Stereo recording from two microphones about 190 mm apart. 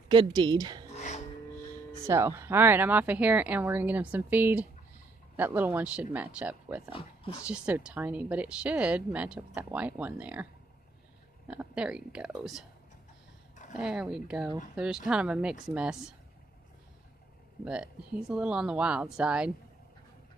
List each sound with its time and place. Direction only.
0.1 s a woman's voice: 25° right (ahead or behind)
0.8 s music: 40° left (ahead or behind)
2.0 s speech: 15° right (ahead or behind)
6.9 s speech: 30° left (ahead or behind)
7.4 s speech: 5° right (ahead or behind)
13.7 s speech: 5° right (ahead or behind)
18.3 s speech: 5° right (ahead or behind)